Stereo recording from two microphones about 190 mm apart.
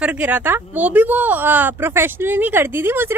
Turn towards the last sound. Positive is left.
turn(degrees=-10)  # may be behind; listen again after turning